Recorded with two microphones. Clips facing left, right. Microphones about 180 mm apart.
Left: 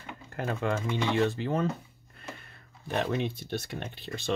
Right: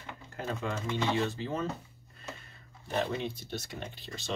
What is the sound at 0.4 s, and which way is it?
Speech, 60° left (ahead or behind).